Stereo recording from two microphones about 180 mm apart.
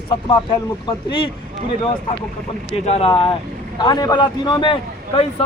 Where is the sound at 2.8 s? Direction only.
35° left (ahead or behind).